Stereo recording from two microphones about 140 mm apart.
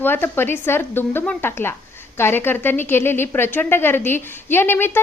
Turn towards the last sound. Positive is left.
turn(degrees=15)  # may be behind; listen again after turning